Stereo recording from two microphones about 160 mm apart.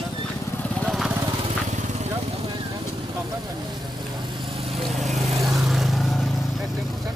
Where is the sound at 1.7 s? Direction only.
45° right (ahead or behind).